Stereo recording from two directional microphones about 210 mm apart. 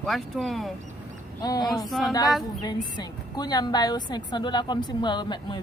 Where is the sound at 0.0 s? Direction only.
Centre (ahead or behind).